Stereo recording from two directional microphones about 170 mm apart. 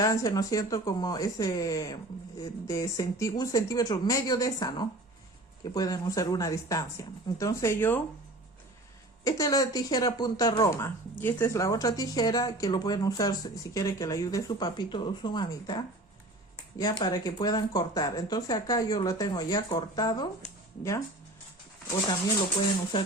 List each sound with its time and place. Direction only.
0.0 s speech: 20° left (ahead or behind)
9.2 s speech: 20° left (ahead or behind)